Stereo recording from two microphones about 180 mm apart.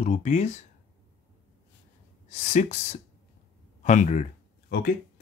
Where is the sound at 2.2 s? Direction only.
40° left (ahead or behind).